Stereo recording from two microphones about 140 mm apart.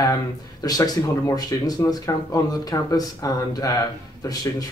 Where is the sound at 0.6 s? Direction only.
25° left (ahead or behind).